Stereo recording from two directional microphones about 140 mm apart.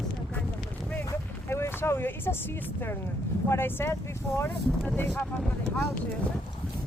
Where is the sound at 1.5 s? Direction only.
20° left (ahead or behind).